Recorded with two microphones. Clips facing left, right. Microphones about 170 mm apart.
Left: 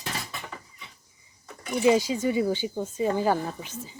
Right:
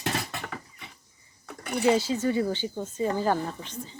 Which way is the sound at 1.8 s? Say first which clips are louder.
Left 2 dB; 15° left (ahead or behind).